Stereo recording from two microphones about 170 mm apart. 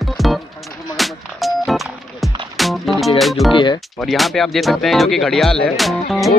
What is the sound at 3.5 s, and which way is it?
Speech, 30° left (ahead or behind).